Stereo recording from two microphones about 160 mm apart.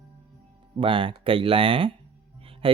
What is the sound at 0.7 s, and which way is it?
Speech, 35° right (ahead or behind).